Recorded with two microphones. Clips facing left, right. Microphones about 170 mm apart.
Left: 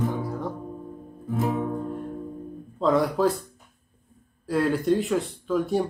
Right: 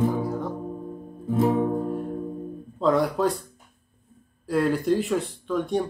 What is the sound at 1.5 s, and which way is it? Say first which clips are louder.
Music: right 4 dB; 35° right (ahead or behind).